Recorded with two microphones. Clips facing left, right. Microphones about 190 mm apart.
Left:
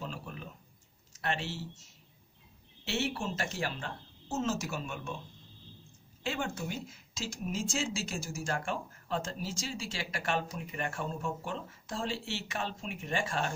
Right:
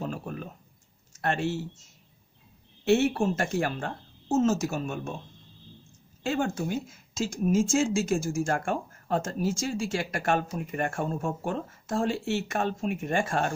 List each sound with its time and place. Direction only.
0.0 s a sound: 50° right (ahead or behind)
1.1 s speech: 50° right (ahead or behind)
2.8 s speech: 50° right (ahead or behind)
6.2 s speech: 45° right (ahead or behind)